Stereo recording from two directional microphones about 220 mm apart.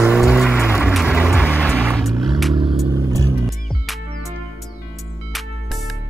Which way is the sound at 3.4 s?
Centre (ahead or behind).